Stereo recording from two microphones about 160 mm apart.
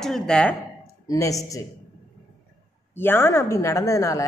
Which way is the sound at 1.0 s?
20° left (ahead or behind).